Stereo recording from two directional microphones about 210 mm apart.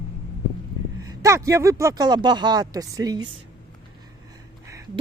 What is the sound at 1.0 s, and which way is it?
Speech, 15° right (ahead or behind).